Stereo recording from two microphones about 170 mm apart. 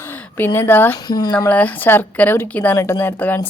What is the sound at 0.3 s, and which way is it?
Speech, 10° left (ahead or behind).